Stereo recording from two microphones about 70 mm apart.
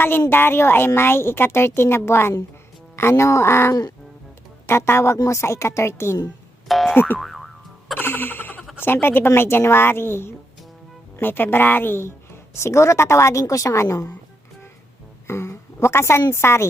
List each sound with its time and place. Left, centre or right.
0.3 s a woman's voice: left
5.1 s a woman's voice: left
5.4 s a woman's voice: left
6.7 s boing: centre
6.9 s a woman's voice: left
7.2 s boing: centre
7.9 s music: left
8.8 s a woman's voice: left
15.3 s a sound: left
16.3 s a woman's voice: left